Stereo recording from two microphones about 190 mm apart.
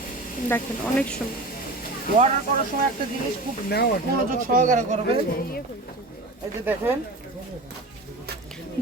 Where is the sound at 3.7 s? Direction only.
55° left (ahead or behind).